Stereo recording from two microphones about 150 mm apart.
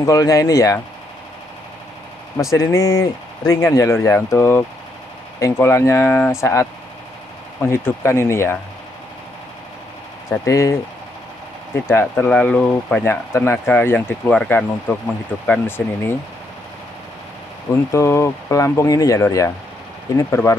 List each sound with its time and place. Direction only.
0.0 s speech: 20° left (ahead or behind)
2.5 s speech: 20° left (ahead or behind)
7.7 s speech: 15° left (ahead or behind)
10.3 s speech: 20° left (ahead or behind)
11.9 s speech: 15° left (ahead or behind)
17.9 s speech: 20° left (ahead or behind)